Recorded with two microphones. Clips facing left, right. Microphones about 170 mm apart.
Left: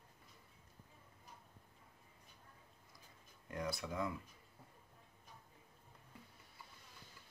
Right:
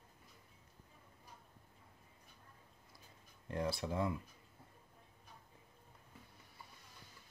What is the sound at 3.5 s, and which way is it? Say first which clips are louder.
Speech: right 4 dB; 30° right (ahead or behind).